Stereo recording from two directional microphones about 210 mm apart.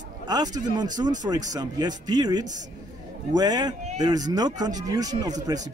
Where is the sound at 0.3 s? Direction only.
20° right (ahead or behind).